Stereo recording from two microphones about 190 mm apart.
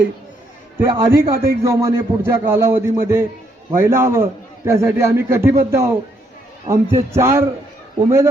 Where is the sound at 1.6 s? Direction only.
15° right (ahead or behind).